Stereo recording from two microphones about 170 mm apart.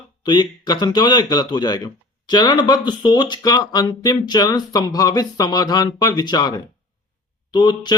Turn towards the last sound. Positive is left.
turn(degrees=25)  # may be behind; listen again after turning